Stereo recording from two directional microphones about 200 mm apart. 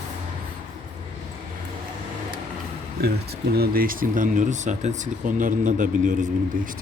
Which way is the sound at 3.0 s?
50° right (ahead or behind).